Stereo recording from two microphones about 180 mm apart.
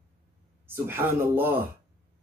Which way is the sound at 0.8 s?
10° right (ahead or behind).